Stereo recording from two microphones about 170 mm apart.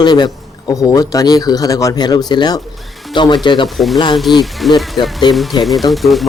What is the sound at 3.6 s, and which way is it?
Speech, centre (ahead or behind).